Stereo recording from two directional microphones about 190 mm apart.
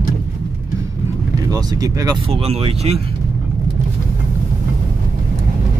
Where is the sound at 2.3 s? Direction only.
30° right (ahead or behind).